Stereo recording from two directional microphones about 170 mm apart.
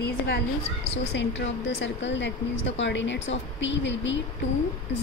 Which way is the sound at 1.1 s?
90° left.